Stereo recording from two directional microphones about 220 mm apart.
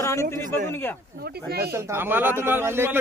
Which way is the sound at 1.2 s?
45° right (ahead or behind).